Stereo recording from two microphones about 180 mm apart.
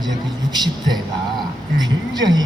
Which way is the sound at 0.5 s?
20° right (ahead or behind).